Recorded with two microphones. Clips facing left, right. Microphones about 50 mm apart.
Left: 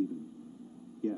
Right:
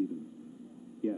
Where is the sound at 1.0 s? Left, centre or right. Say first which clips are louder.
Right 1 dB; centre.